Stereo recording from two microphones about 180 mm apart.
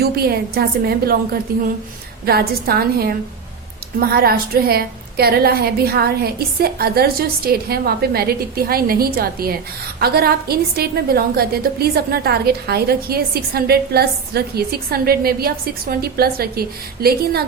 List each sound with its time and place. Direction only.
0.0 s a woman's voice: 60° right (ahead or behind)